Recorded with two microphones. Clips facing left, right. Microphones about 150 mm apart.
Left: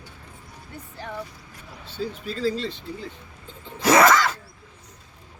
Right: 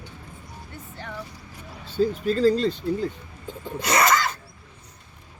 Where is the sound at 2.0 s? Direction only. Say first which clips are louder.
Right 8 dB; 45° right (ahead or behind).